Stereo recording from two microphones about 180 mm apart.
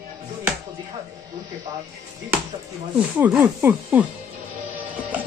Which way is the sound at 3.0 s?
10° right (ahead or behind).